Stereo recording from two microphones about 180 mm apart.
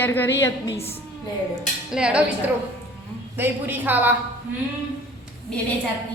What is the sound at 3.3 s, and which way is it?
Speech, 10° right (ahead or behind).